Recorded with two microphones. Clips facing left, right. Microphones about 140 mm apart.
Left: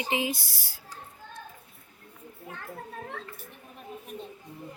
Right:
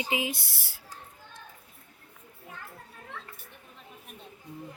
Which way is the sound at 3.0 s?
60° left (ahead or behind).